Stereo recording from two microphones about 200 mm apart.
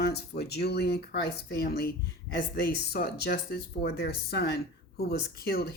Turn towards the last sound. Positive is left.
turn(degrees=50)  # may be behind; listen again after turning